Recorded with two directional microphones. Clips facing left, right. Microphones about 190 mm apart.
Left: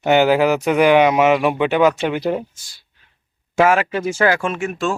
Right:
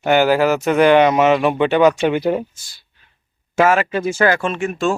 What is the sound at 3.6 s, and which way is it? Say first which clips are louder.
Speech: even; 10° left (ahead or behind).